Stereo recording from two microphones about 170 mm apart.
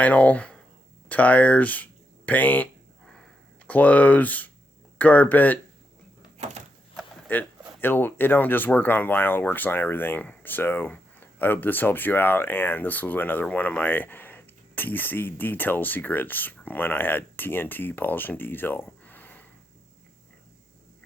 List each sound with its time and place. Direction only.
0.0 s speech: 10° left (ahead or behind)
3.7 s speech: 10° left (ahead or behind)
6.3 s door: 40° right (ahead or behind)
7.3 s speech: 10° left (ahead or behind)